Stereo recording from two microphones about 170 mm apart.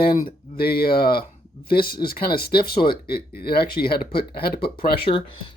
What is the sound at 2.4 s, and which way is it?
Speech, 65° left (ahead or behind).